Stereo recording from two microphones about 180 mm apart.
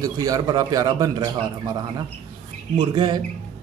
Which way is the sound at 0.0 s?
20° right (ahead or behind).